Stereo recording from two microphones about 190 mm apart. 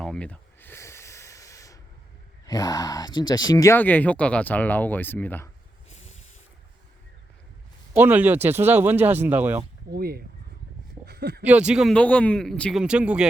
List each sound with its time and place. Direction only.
0.0 s a sound: 5° left (ahead or behind)
2.5 s speech: 20° left (ahead or behind)
7.9 s speech: 10° right (ahead or behind)
9.9 s speech: 55° right (ahead or behind)
11.0 s a sound: 55° right (ahead or behind)
11.4 s speech: 5° right (ahead or behind)